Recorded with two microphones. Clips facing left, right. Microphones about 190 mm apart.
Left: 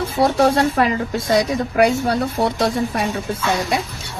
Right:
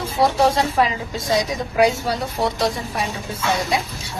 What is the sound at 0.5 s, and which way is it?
Speech, 60° left (ahead or behind).